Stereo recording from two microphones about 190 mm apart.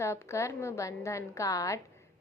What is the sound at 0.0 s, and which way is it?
A woman's voice, 15° left (ahead or behind).